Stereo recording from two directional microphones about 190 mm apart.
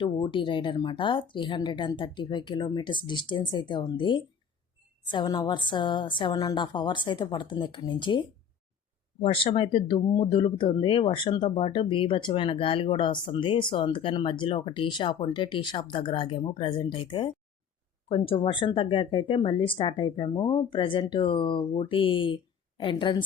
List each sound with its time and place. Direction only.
0.0 s speech: 25° left (ahead or behind)
9.2 s speech: 30° left (ahead or behind)